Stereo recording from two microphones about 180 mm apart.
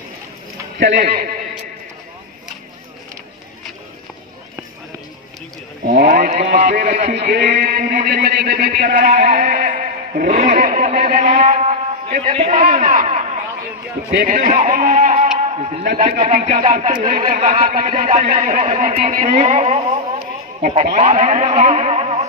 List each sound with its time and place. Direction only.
0.7 s speech: 60° right (ahead or behind)
5.8 s speech: 60° right (ahead or behind)
7.2 s speech: 65° right (ahead or behind)
7.4 s a man's voice: 50° right (ahead or behind)
10.3 s speech: 35° right (ahead or behind)
10.6 s a man's voice: 45° right (ahead or behind)
21.5 s music: 40° right (ahead or behind)